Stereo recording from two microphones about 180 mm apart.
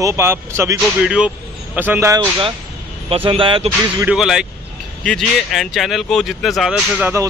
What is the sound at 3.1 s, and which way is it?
Speech, 30° right (ahead or behind).